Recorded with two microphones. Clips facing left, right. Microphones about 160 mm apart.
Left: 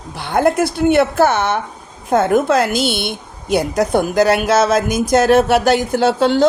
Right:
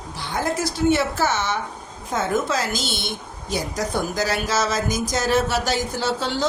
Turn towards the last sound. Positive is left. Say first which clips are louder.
# left 10 dB
turn(degrees=60)  # may be behind; listen again after turning